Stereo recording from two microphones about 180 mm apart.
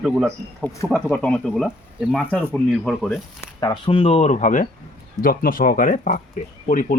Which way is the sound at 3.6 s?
25° left (ahead or behind).